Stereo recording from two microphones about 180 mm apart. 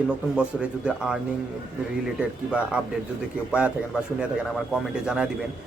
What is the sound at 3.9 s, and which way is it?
Speech, 5° right (ahead or behind).